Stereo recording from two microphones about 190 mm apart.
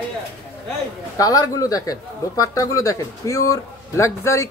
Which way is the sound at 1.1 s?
20° left (ahead or behind).